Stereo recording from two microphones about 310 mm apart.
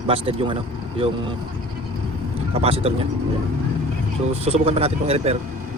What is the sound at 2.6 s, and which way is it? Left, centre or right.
Speech, centre.